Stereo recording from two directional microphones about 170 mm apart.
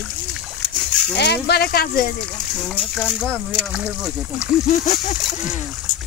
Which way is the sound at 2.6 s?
Centre (ahead or behind).